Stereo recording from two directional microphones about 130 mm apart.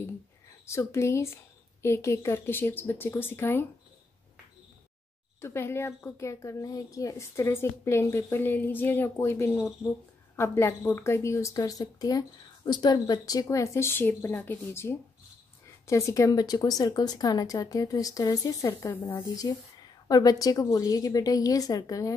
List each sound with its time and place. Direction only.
0.7 s speech: 20° left (ahead or behind)
5.4 s speech: 20° left (ahead or behind)
20.1 s speech: 30° left (ahead or behind)